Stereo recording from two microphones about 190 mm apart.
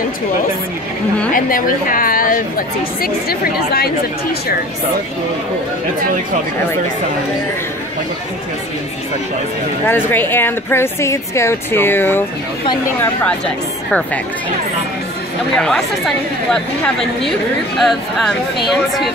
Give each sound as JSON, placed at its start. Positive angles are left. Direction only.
{"t": 1.3, "sound": "a woman's voice", "side_deg": 45}
{"t": 9.8, "sound": "speech", "side_deg": 10}
{"t": 15.5, "sound": "speech", "side_deg": 5}